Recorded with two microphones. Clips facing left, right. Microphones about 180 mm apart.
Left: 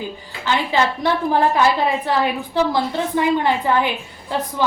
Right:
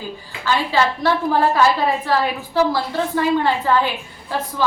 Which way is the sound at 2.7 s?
20° left (ahead or behind).